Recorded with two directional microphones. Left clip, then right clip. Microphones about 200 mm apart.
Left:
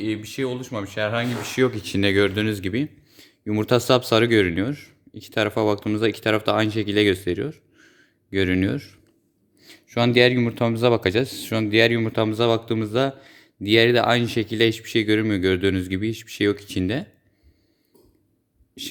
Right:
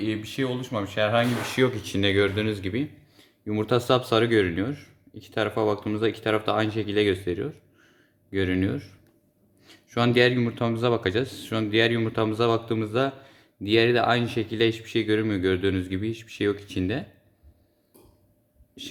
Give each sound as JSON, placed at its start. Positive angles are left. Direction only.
{"t": 0.0, "sound": "speech", "side_deg": 35}
{"t": 18.8, "sound": "speech", "side_deg": 45}